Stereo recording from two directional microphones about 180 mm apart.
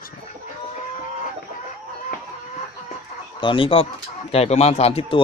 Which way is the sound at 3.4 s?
30° left (ahead or behind).